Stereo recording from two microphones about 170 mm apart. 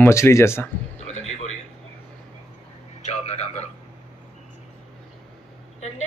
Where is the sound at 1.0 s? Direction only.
40° left (ahead or behind).